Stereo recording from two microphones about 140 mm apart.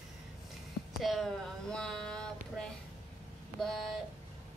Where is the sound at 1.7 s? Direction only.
5° left (ahead or behind).